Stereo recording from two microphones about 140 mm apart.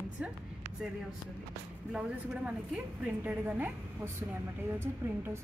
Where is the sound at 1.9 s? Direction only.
5° right (ahead or behind).